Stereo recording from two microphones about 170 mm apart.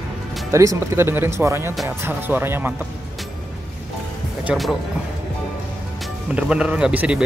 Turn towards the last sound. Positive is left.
turn(degrees=-5)  # may be behind; listen again after turning